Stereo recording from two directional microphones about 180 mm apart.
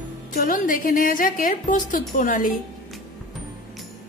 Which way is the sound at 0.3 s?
50° left (ahead or behind).